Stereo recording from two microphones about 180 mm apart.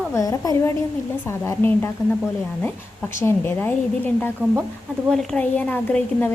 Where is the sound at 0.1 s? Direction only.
20° left (ahead or behind).